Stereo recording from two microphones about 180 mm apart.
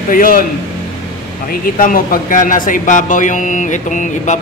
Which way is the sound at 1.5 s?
50° left (ahead or behind).